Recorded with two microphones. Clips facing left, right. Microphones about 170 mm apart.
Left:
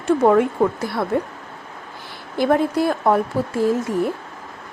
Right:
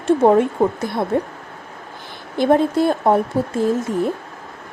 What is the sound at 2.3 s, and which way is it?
Speech, 25° right (ahead or behind).